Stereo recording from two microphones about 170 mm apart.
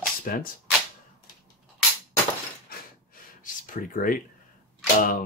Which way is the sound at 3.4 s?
55° left (ahead or behind).